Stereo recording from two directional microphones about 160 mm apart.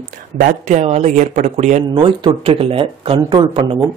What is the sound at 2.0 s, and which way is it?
Speech, 30° right (ahead or behind).